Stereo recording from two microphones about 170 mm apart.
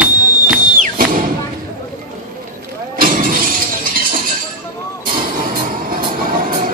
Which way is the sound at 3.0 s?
55° right (ahead or behind).